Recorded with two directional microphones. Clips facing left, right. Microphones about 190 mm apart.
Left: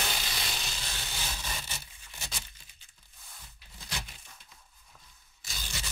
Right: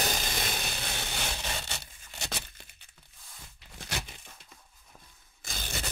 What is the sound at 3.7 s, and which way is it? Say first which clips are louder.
Tearing: right 4 dB; 70° right (ahead or behind).